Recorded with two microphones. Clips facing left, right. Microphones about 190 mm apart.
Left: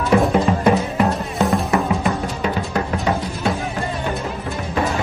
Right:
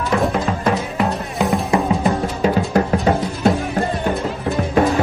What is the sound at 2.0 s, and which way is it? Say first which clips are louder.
Music: right 4 dB; 35° right (ahead or behind).